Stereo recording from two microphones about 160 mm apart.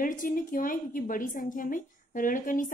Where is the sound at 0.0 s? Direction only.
60° left (ahead or behind).